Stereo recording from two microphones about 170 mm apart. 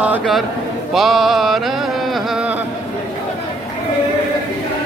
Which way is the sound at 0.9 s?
Centre (ahead or behind).